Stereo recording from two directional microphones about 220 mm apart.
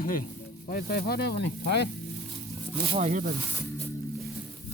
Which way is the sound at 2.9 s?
30° right (ahead or behind).